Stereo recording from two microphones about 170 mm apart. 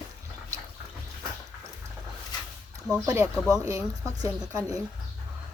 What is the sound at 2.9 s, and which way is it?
Speech, 20° right (ahead or behind).